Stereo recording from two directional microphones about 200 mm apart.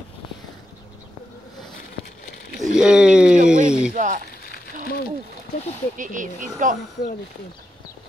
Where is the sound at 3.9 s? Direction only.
40° right (ahead or behind).